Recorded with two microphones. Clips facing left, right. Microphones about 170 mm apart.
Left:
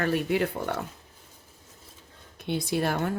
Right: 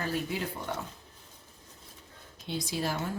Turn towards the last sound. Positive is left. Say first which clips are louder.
# left 6 dB
turn(degrees=65)  # may be behind; listen again after turning